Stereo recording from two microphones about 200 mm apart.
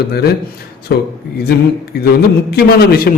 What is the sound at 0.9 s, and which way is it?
A man's voice, 55° left (ahead or behind).